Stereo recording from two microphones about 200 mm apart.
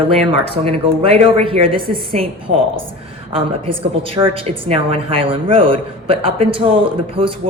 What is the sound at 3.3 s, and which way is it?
A woman's voice, 25° right (ahead or behind).